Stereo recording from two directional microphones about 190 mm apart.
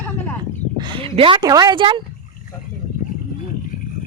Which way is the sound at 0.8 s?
25° right (ahead or behind).